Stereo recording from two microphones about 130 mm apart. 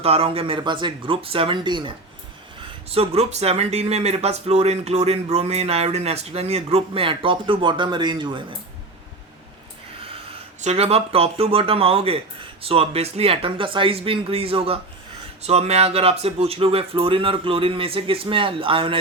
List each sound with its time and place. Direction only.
0.0 s speech: 50° right (ahead or behind)
2.9 s speech: 50° right (ahead or behind)
10.6 s speech: 55° right (ahead or behind)